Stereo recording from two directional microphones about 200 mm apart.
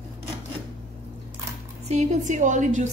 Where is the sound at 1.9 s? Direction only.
35° right (ahead or behind).